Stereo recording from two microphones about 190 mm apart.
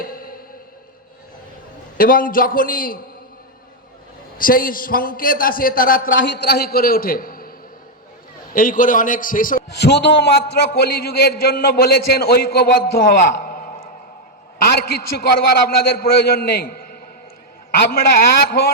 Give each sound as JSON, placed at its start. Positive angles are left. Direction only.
{"t": 0.0, "sound": "music", "side_deg": 50}
{"t": 2.0, "sound": "a man's voice", "side_deg": 45}
{"t": 4.4, "sound": "a man's voice", "side_deg": 50}
{"t": 6.1, "sound": "a man's voice", "side_deg": 65}
{"t": 8.5, "sound": "a man's voice", "side_deg": 45}
{"t": 15.3, "sound": "a man's voice", "side_deg": 55}